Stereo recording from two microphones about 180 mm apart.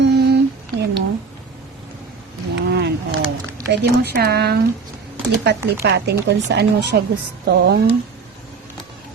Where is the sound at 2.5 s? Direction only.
70° right (ahead or behind).